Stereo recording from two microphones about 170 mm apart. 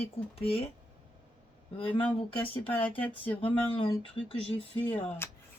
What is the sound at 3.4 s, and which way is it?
Speech, 30° left (ahead or behind).